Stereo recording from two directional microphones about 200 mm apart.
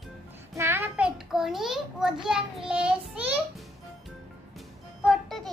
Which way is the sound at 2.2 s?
5° right (ahead or behind).